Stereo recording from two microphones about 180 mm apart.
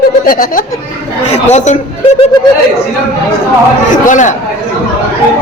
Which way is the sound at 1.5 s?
40° left (ahead or behind).